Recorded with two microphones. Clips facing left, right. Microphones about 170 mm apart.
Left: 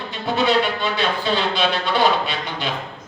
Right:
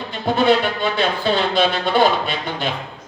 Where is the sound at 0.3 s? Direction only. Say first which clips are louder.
Right 2 dB; 50° right (ahead or behind).